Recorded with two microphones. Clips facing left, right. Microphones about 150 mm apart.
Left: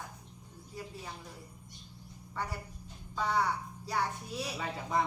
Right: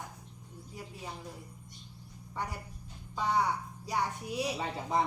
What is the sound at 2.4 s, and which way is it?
A woman's voice, 15° right (ahead or behind).